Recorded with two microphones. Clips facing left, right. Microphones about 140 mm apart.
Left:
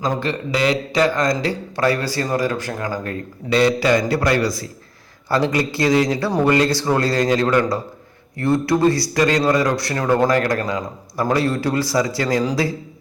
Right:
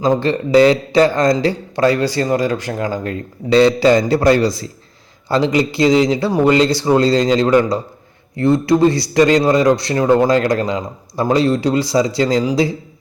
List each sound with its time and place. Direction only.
0.0 s a man's voice: 30° right (ahead or behind)